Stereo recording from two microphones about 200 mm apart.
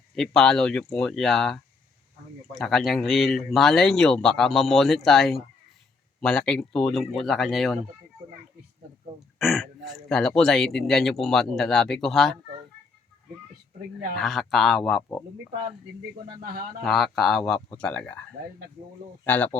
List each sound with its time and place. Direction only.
0.2 s speech: 5° left (ahead or behind)
2.6 s speech: centre (ahead or behind)
9.4 s speech: centre (ahead or behind)
14.2 s speech: centre (ahead or behind)
16.3 s speech: 45° right (ahead or behind)
16.8 s speech: centre (ahead or behind)
19.2 s speech: 10° left (ahead or behind)